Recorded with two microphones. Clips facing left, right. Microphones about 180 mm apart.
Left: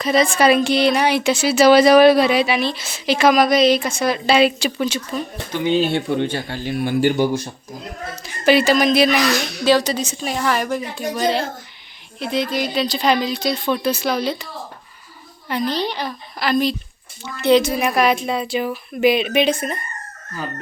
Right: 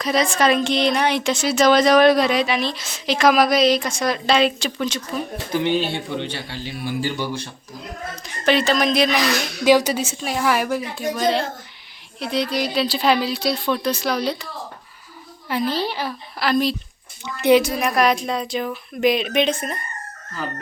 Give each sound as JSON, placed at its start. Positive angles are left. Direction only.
{"t": 0.0, "sound": "a woman's voice", "side_deg": 0}
{"t": 5.8, "sound": "speech", "side_deg": 50}
{"t": 8.1, "sound": "a woman's voice", "side_deg": 5}
{"t": 9.6, "sound": "a woman's voice", "side_deg": -10}
{"t": 15.4, "sound": "a woman's voice", "side_deg": -5}
{"t": 17.2, "sound": "a woman's voice", "side_deg": -15}
{"t": 17.6, "sound": "a woman's voice", "side_deg": 0}